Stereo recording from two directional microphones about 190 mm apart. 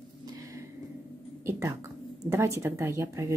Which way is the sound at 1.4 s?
15° right (ahead or behind).